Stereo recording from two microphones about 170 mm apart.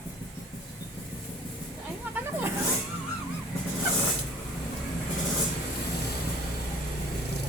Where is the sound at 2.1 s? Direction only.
10° right (ahead or behind).